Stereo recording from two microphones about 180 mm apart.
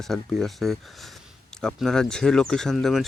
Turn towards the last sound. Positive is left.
turn(degrees=0)  # may be behind; listen again after turning